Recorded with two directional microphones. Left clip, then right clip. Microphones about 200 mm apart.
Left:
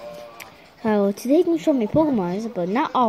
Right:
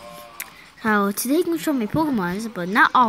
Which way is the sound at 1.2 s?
15° right (ahead or behind).